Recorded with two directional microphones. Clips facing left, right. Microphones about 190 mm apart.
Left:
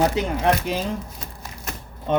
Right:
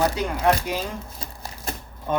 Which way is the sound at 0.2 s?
20° left (ahead or behind).